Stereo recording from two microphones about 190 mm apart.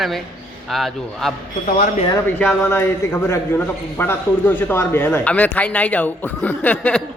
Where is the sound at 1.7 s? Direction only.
50° left (ahead or behind).